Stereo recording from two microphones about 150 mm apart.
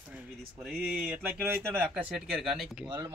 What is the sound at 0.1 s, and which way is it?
Speech, 10° right (ahead or behind).